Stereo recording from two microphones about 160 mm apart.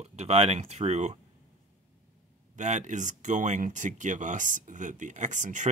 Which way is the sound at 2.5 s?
50° right (ahead or behind).